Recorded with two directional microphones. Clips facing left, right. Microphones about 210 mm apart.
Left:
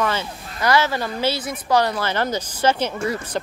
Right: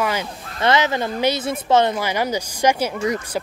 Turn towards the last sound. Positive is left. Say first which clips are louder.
# right 2 dB
turn(degrees=-15)  # may be behind; listen again after turning